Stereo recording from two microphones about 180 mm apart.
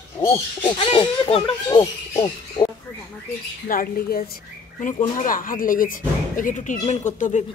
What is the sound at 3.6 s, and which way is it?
Speech, 50° left (ahead or behind).